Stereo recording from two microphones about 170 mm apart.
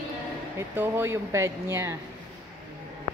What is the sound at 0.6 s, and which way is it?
Speech, 15° right (ahead or behind).